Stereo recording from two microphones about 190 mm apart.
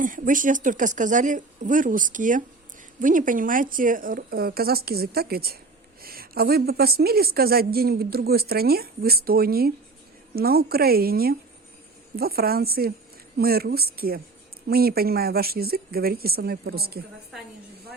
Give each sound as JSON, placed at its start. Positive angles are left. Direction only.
{"t": 0.0, "sound": "a woman's voice", "side_deg": -45}